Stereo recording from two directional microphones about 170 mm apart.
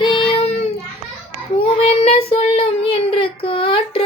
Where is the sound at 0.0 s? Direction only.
30° left (ahead or behind).